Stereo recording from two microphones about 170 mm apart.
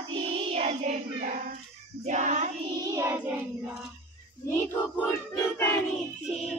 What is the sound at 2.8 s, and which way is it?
Child singing, 15° right (ahead or behind).